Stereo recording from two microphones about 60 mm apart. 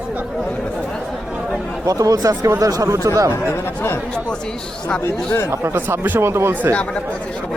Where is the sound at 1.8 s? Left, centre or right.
Right.